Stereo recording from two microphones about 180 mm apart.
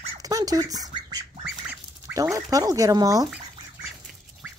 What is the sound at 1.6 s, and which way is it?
Fowl, 15° right (ahead or behind).